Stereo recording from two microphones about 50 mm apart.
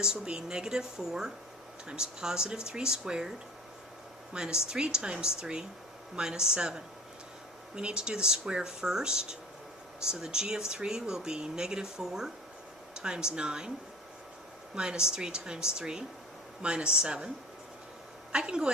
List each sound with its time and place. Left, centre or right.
0.0 s speech: centre
4.4 s speech: centre
14.8 s a woman's voice: centre